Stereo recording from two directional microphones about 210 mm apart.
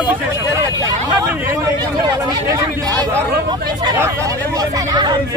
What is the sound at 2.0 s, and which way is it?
Speech, 20° right (ahead or behind).